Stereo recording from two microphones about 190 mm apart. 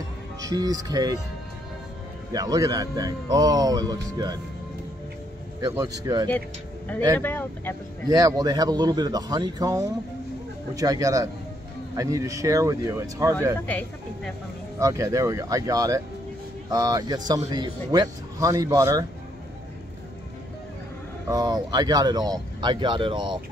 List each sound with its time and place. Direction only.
0.4 s speech: 20° right (ahead or behind)
2.3 s speech: 20° right (ahead or behind)
5.6 s speech: 20° right (ahead or behind)
7.2 s speech: 10° left (ahead or behind)
8.1 s speech: 20° right (ahead or behind)
13.7 s speech: 10° left (ahead or behind)
14.8 s speech: 15° right (ahead or behind)
21.3 s speech: 20° right (ahead or behind)